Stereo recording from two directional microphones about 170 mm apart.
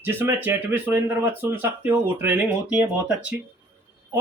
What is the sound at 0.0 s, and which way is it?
Speech, 15° right (ahead or behind).